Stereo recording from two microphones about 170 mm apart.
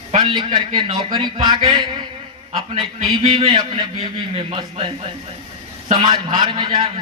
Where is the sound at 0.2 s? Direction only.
25° right (ahead or behind).